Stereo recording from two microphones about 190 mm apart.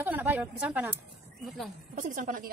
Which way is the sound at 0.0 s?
10° right (ahead or behind).